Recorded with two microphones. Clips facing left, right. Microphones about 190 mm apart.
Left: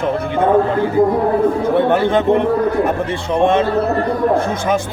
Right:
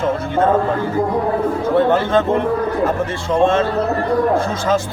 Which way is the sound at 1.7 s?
15° left (ahead or behind).